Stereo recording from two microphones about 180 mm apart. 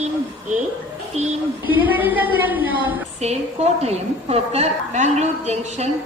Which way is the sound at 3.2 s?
35° right (ahead or behind).